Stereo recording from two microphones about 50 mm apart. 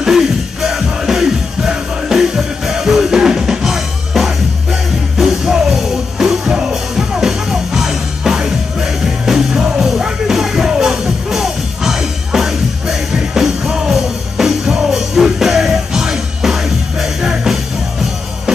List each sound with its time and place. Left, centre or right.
0.0 s music: centre